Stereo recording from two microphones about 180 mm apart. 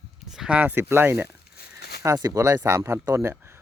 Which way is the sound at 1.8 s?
65° left (ahead or behind).